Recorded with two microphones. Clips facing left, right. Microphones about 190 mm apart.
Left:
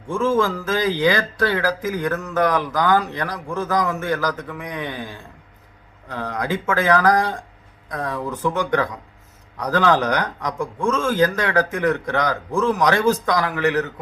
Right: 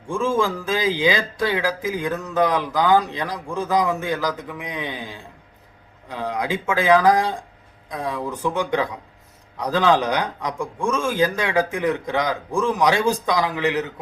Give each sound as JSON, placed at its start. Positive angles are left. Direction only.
{"t": 0.1, "sound": "a man's voice", "side_deg": -15}